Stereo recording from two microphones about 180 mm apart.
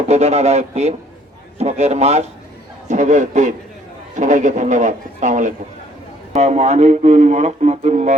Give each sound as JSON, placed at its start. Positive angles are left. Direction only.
{"t": 0.1, "sound": "a man's voice", "side_deg": -35}